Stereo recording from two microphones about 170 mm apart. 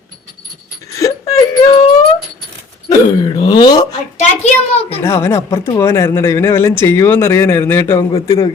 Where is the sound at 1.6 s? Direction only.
35° left (ahead or behind).